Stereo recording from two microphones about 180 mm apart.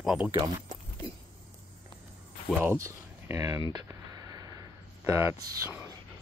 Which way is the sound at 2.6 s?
15° right (ahead or behind).